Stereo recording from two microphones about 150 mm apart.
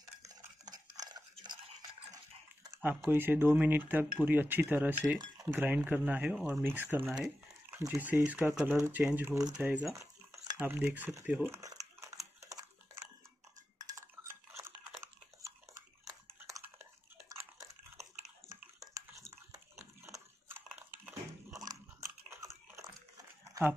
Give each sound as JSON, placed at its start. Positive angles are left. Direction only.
{"t": 0.2, "sound": "stir", "side_deg": -25}
{"t": 1.3, "sound": "chewing", "side_deg": -30}
{"t": 2.8, "sound": "speech", "side_deg": -15}
{"t": 9.9, "sound": "cutlery", "side_deg": -20}
{"t": 10.6, "sound": "speech", "side_deg": -10}
{"t": 12.0, "sound": "a sound", "side_deg": -20}
{"t": 13.8, "sound": "cutlery", "side_deg": -20}
{"t": 17.4, "sound": "dog", "side_deg": -20}
{"t": 18.5, "sound": "a sound", "side_deg": -20}
{"t": 20.1, "sound": "biting", "side_deg": -15}